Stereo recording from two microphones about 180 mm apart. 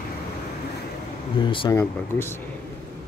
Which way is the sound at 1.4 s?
25° left (ahead or behind).